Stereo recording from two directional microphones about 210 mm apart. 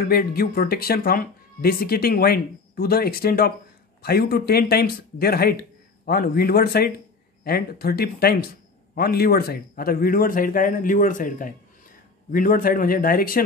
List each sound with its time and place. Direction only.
0.1 s speech: 45° left (ahead or behind)